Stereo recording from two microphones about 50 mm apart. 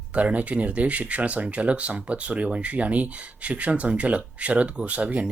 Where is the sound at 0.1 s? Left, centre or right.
Right.